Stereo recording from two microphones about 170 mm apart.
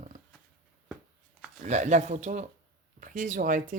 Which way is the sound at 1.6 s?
45° right (ahead or behind).